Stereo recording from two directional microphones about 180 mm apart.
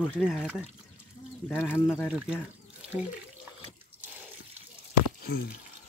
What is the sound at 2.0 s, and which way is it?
Speech, 5° right (ahead or behind).